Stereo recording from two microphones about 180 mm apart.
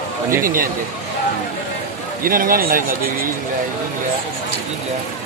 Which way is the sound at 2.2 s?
50° right (ahead or behind).